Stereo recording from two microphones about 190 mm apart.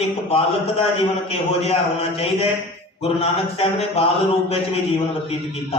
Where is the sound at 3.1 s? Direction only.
30° left (ahead or behind).